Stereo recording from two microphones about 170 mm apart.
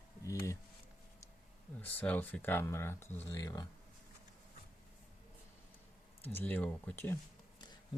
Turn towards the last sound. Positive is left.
turn(degrees=10)  # may be behind; listen again after turning